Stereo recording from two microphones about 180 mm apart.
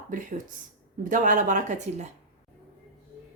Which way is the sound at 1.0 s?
45° right (ahead or behind).